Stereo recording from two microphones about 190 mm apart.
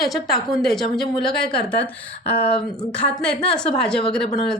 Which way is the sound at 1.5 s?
30° left (ahead or behind).